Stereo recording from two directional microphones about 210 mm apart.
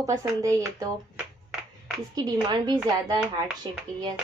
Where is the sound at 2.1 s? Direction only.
20° right (ahead or behind).